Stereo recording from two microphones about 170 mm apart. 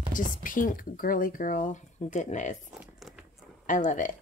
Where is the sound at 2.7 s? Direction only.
5° right (ahead or behind).